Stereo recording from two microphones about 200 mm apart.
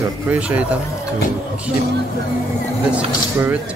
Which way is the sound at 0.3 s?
5° right (ahead or behind).